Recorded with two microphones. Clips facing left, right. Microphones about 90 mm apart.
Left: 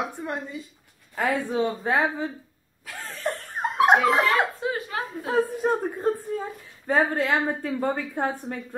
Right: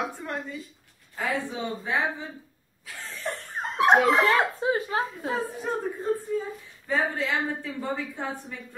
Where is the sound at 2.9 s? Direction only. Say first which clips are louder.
Left 4 dB; 50° left (ahead or behind).